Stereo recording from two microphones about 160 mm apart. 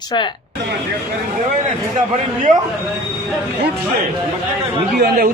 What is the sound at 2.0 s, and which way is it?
Speech, 50° right (ahead or behind).